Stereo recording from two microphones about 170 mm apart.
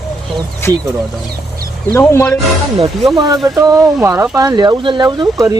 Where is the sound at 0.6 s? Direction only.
15° left (ahead or behind).